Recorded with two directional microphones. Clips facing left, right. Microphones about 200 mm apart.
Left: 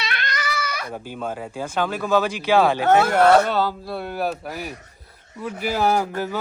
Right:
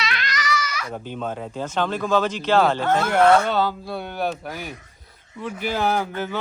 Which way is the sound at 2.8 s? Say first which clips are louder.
Left 4 dB; 70° left (ahead or behind).